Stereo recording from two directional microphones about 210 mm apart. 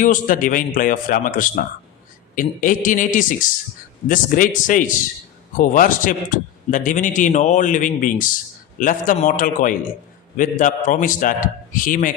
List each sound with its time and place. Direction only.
0.0 s a man's voice: 40° left (ahead or behind)